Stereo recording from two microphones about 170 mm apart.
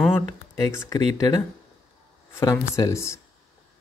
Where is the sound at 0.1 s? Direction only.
15° left (ahead or behind).